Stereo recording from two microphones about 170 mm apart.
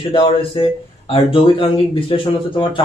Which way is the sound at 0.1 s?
30° left (ahead or behind).